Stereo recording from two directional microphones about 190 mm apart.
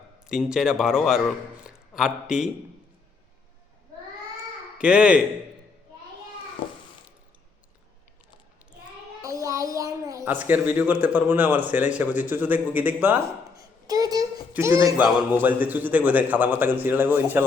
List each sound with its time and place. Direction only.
0.3 s a man's voice: 5° right (ahead or behind)
4.8 s speech: 5° right (ahead or behind)
9.2 s a woman's voice: 15° right (ahead or behind)
13.8 s a sound: 20° right (ahead or behind)
14.5 s a man's voice: 10° right (ahead or behind)